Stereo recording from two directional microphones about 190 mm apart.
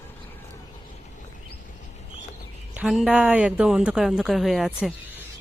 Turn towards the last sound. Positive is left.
turn(degrees=0)  # may be behind; listen again after turning